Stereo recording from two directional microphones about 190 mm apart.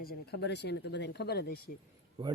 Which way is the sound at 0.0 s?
55° left (ahead or behind).